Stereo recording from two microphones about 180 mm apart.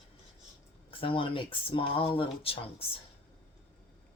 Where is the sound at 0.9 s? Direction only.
30° left (ahead or behind).